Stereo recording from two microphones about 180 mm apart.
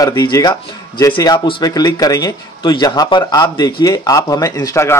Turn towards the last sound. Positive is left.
turn(degrees=15)  # may be behind; listen again after turning